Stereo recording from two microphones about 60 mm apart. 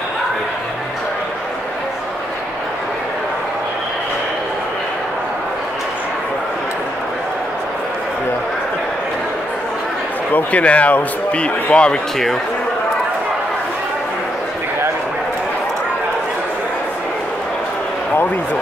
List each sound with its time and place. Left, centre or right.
10.3 s speech: left